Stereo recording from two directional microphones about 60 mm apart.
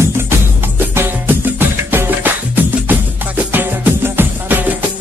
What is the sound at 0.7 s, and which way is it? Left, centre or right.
Music, right.